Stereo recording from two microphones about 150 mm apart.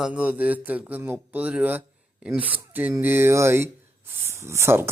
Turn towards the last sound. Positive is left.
turn(degrees=-15)  # may be behind; listen again after turning